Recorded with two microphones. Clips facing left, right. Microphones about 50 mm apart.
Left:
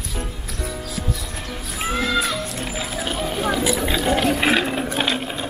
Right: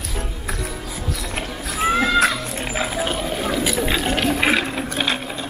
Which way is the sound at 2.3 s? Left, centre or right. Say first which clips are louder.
Right 1 dB; right.